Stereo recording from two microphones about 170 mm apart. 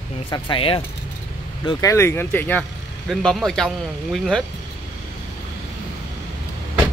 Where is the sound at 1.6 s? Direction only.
15° left (ahead or behind); by 4.4 s centre (ahead or behind).